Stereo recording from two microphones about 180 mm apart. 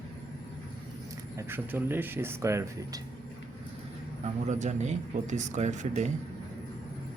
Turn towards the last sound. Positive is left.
turn(degrees=-40)  # may be behind; listen again after turning